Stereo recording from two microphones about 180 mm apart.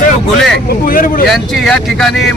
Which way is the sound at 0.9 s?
50° left (ahead or behind).